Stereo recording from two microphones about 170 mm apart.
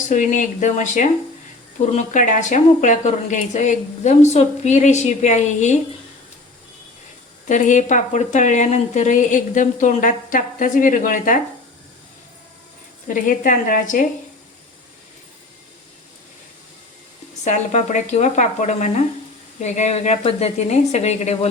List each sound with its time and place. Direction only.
0.1 s speech: 45° left (ahead or behind)
7.4 s speech: 45° left (ahead or behind)
13.2 s speech: 50° left (ahead or behind)
17.4 s speech: 45° left (ahead or behind)